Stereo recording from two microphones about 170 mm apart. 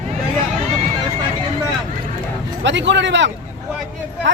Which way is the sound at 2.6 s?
90° right.